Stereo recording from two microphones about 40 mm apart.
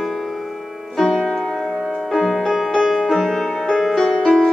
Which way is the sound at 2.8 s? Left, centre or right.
Centre.